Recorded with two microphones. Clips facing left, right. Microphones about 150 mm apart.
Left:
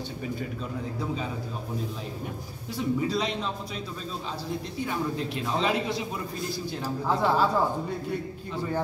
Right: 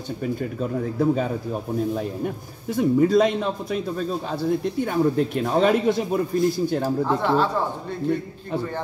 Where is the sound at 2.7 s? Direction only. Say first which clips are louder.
Right 10 dB; 50° right (ahead or behind).